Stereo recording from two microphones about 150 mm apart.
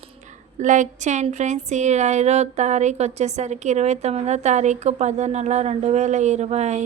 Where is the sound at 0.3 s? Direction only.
55° right (ahead or behind).